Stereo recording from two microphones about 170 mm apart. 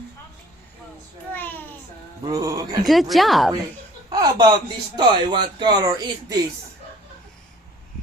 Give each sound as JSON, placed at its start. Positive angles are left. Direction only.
{"t": 1.3, "sound": "a sound", "side_deg": 10}
{"t": 2.2, "sound": "speech", "side_deg": -20}
{"t": 2.8, "sound": "speech", "side_deg": 0}
{"t": 4.1, "sound": "speech", "side_deg": -20}